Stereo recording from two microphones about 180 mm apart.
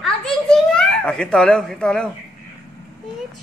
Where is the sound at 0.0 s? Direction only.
5° left (ahead or behind).